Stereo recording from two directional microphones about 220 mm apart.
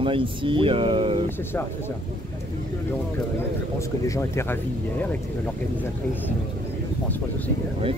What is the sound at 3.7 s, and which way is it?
Speech, 15° left (ahead or behind).